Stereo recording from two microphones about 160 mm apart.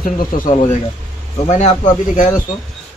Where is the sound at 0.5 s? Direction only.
35° left (ahead or behind).